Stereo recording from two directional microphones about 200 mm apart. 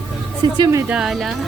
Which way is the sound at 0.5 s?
20° right (ahead or behind).